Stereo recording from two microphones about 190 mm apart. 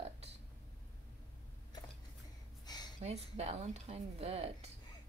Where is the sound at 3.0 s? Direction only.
35° right (ahead or behind).